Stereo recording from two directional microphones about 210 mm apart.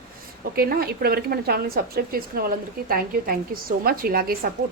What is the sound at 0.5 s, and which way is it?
A woman's voice, 45° right (ahead or behind).